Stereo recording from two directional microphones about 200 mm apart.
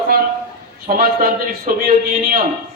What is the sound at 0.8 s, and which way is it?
Speech, 45° right (ahead or behind).